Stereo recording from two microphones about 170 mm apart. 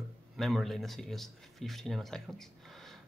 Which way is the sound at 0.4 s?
Centre (ahead or behind).